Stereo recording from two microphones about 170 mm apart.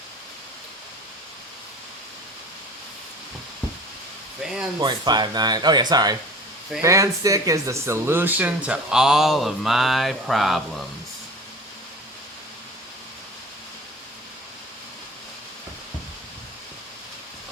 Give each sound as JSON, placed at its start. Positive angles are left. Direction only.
{"t": 4.8, "sound": "speech", "side_deg": -25}